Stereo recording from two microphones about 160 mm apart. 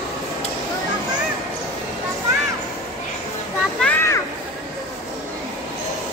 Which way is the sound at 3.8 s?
15° left (ahead or behind).